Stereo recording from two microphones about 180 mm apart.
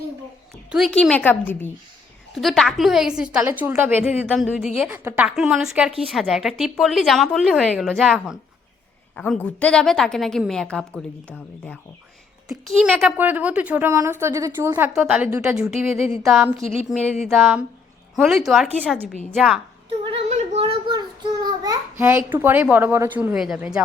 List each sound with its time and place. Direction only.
0.7 s a woman's voice: centre (ahead or behind)
12.8 s a woman's voice: 5° right (ahead or behind)
20.1 s a sound: 35° right (ahead or behind)
21.4 s a child's voice: 20° right (ahead or behind); by 23.8 s 5° right (ahead or behind)